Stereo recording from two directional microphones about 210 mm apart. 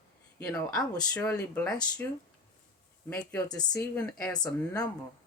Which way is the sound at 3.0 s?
5° left (ahead or behind).